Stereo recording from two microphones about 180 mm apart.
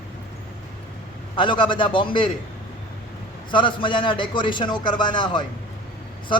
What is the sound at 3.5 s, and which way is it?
A man's voice, 30° left (ahead or behind).